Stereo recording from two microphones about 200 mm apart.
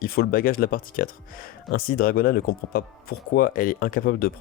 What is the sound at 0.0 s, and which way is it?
Speech, 45° left (ahead or behind).